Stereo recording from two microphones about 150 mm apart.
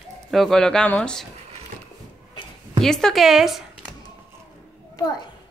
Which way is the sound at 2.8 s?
5° left (ahead or behind).